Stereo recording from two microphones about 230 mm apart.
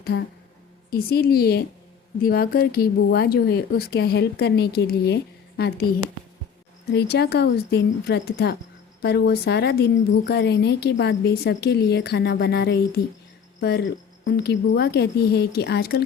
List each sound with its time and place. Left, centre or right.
0.1 s a woman's voice: left
0.9 s a woman's voice: left
6.9 s a woman's voice: left